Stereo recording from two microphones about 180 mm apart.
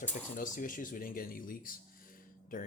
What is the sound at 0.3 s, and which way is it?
Speech, 50° left (ahead or behind).